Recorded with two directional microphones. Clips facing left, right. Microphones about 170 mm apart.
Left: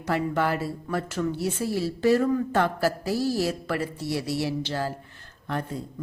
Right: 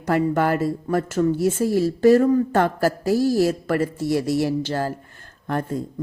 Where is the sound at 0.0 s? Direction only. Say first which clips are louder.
Right 5 dB; 50° right (ahead or behind).